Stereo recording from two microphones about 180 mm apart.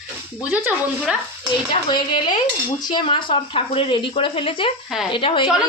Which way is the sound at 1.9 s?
25° left (ahead or behind).